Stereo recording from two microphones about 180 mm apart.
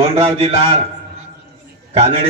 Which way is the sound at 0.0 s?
30° right (ahead or behind).